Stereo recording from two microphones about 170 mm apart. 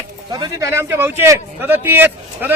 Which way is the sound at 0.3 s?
25° right (ahead or behind).